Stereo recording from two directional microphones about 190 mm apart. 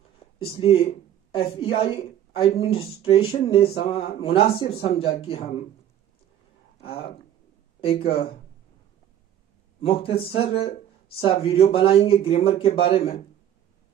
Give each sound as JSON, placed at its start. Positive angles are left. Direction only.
{"t": 0.4, "sound": "speech", "side_deg": 30}
{"t": 6.8, "sound": "speech", "side_deg": 30}
{"t": 9.8, "sound": "speech", "side_deg": 30}